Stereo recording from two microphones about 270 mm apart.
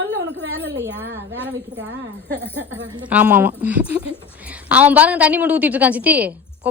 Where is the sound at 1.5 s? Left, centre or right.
Right.